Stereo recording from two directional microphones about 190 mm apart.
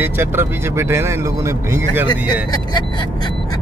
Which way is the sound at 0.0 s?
10° right (ahead or behind).